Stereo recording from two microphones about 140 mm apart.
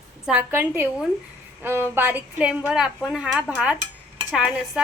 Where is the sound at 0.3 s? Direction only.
10° right (ahead or behind).